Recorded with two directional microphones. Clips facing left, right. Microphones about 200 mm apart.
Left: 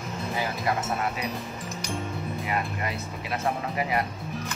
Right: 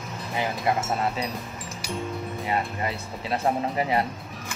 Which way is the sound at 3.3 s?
30° right (ahead or behind).